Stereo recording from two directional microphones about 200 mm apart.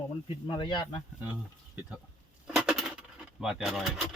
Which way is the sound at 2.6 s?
Centre (ahead or behind).